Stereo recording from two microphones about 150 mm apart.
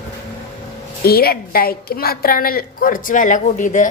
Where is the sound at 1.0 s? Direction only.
90° left.